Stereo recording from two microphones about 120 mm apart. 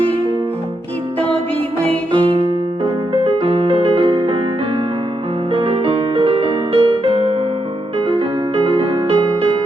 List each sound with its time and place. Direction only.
2.1 s music: 55° right (ahead or behind)
5.5 s music: 50° right (ahead or behind)